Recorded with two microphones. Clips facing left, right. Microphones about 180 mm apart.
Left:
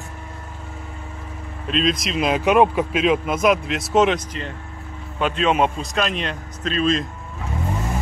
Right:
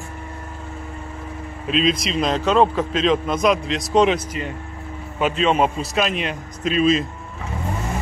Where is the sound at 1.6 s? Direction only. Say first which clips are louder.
Right 1 dB; centre (ahead or behind).